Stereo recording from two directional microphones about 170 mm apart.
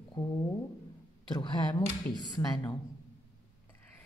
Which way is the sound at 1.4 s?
25° left (ahead or behind).